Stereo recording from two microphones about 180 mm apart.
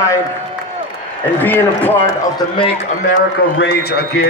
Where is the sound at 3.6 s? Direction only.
60° left (ahead or behind).